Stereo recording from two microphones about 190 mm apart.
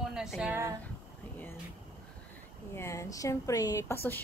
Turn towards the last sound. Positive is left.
turn(degrees=10)  # may be behind; listen again after turning